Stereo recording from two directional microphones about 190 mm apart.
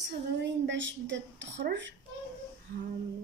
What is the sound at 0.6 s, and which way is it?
Speech, 75° right (ahead or behind).